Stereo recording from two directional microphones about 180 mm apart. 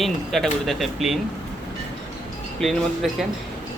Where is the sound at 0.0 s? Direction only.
Centre (ahead or behind).